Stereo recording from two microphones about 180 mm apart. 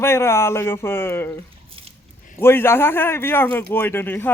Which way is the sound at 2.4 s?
15° left (ahead or behind).